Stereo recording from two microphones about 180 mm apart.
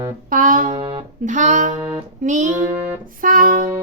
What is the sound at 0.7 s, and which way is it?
Speech, 25° right (ahead or behind).